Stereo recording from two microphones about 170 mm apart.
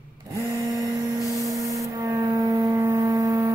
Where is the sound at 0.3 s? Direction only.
20° right (ahead or behind).